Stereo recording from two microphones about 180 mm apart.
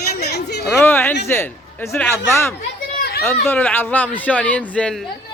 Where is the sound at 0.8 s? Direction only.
10° left (ahead or behind).